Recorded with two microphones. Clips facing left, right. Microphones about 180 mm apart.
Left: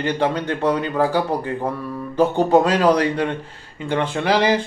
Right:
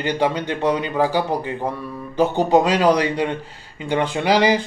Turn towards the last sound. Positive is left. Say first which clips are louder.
# right 1 dB
turn(degrees=-5)  # may be behind; listen again after turning